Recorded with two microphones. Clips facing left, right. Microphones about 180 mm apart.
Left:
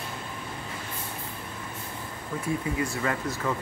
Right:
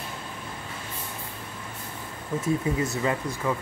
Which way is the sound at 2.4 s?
20° right (ahead or behind).